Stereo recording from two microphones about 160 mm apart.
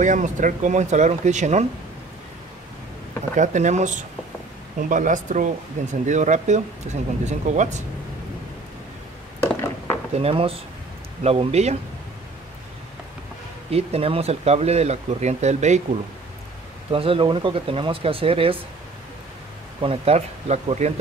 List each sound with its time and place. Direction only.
0.0 s speech: 50° right (ahead or behind)
3.3 s speech: 45° right (ahead or behind)
9.4 s a sound: 15° left (ahead or behind)
10.1 s speech: 40° right (ahead or behind)
13.7 s speech: 40° right (ahead or behind)
16.9 s speech: 35° right (ahead or behind)
19.8 s speech: 40° right (ahead or behind)